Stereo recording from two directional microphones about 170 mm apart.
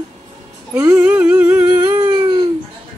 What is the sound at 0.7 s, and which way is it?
Humming, 15° right (ahead or behind).